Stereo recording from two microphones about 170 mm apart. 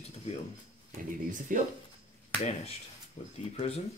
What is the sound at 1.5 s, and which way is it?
Speech, 50° right (ahead or behind).